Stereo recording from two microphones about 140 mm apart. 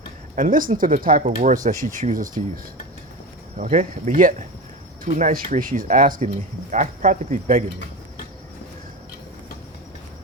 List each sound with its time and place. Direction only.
0.3 s speech: 70° right (ahead or behind)
1.6 s speech: 65° right (ahead or behind)
3.6 s speech: 60° right (ahead or behind)